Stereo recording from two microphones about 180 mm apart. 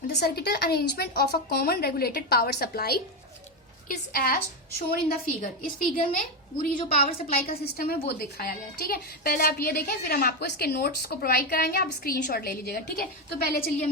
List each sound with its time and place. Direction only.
0.1 s a woman's voice: 65° left (ahead or behind)
6.8 s a woman's voice: 30° left (ahead or behind)
7.3 s a woman's voice: 55° left (ahead or behind)